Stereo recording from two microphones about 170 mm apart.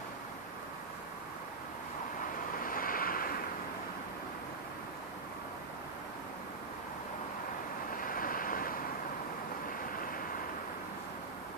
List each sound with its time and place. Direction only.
2.6 s waves: 55° left (ahead or behind)
8.0 s vehicle: 55° left (ahead or behind)